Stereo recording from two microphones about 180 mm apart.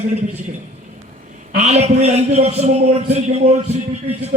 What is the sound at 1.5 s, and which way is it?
A man's voice, 40° right (ahead or behind).